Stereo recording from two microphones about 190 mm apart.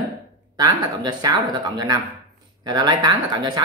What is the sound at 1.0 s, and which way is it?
Speech, 20° right (ahead or behind).